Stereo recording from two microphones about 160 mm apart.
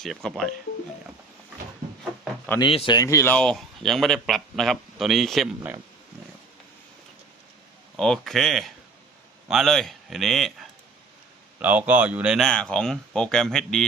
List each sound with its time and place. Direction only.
0.0 s speech: 5° left (ahead or behind)
2.6 s speech: 30° left (ahead or behind)
3.3 s speech: 5° left (ahead or behind)
7.9 s speech: 5° left (ahead or behind)